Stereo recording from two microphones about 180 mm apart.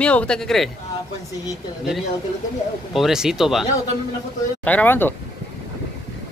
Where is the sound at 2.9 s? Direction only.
Centre (ahead or behind).